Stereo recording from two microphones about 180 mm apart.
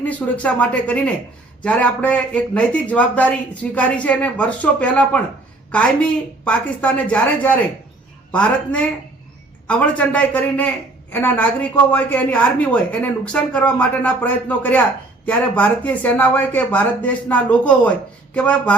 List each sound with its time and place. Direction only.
0.0 s a woman's voice: 10° left (ahead or behind)